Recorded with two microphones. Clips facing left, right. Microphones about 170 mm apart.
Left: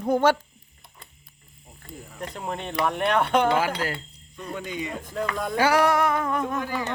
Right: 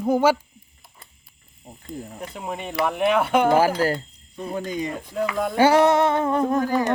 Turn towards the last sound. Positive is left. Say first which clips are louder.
# right 7 dB
turn(degrees=-40)  # may be behind; listen again after turning